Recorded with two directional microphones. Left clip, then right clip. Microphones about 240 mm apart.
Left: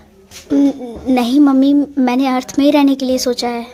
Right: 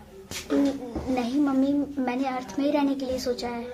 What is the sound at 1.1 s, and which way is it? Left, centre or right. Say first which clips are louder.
A woman's voice: left 13 dB; left.